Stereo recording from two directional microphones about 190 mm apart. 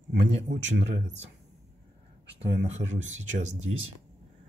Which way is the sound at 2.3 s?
35° right (ahead or behind).